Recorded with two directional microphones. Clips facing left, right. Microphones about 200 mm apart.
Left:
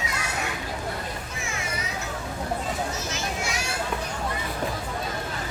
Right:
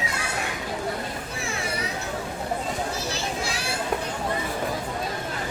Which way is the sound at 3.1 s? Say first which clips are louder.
Right 1 dB; 35° right (ahead or behind).